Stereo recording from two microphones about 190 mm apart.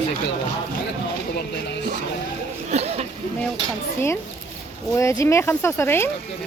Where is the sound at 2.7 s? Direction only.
35° right (ahead or behind).